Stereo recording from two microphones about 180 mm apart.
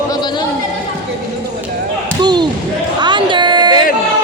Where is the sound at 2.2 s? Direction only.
25° right (ahead or behind).